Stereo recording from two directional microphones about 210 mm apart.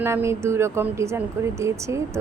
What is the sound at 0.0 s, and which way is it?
Speech, 10° right (ahead or behind).